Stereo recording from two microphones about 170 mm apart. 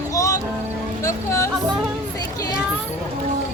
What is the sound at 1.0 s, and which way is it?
Speech, 20° left (ahead or behind).